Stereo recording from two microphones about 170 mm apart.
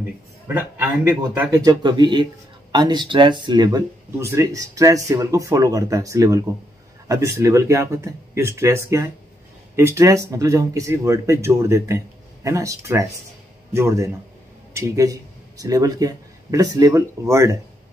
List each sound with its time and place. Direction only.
1.3 s speech: 15° right (ahead or behind)